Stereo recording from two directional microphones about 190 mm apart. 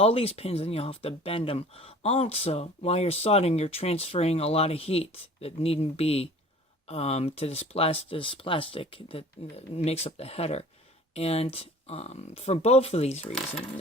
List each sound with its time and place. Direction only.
0.0 s speech: 30° left (ahead or behind)